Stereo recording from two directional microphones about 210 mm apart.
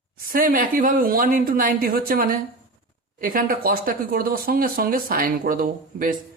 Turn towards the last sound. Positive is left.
turn(degrees=-40)  # may be behind; listen again after turning